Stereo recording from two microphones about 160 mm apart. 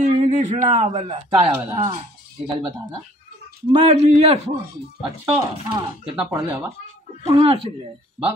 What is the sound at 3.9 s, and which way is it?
Speech, 40° right (ahead or behind).